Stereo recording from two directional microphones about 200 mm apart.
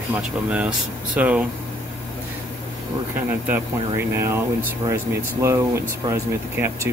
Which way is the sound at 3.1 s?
10° right (ahead or behind).